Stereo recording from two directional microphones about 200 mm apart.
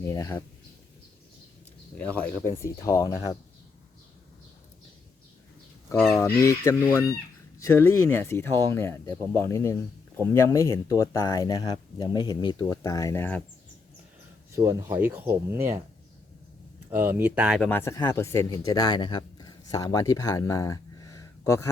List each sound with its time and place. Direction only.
0.0 s speech: 15° left (ahead or behind)
2.0 s speech: 5° left (ahead or behind)
6.0 s speech: 5° left (ahead or behind)
14.5 s speech: 15° right (ahead or behind)
16.9 s speech: 10° right (ahead or behind)
17.6 s speech: 10° left (ahead or behind)